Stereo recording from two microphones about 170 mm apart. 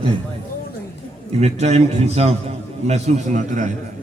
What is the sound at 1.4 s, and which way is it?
A man's voice, 40° right (ahead or behind).